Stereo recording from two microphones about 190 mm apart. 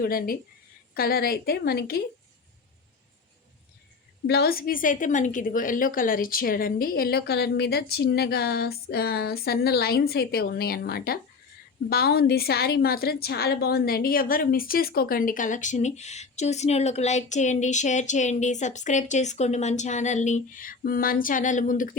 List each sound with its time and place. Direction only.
0.0 s a woman's voice: 50° left (ahead or behind)
4.3 s a woman's voice: 55° left (ahead or behind)